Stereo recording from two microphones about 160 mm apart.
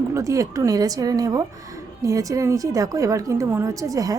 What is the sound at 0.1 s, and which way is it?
A woman's voice, 20° right (ahead or behind).